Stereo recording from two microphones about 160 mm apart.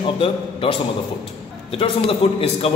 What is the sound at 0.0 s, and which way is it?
A man's voice, 35° left (ahead or behind).